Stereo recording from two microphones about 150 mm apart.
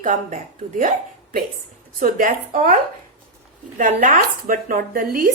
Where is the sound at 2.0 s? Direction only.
60° right (ahead or behind).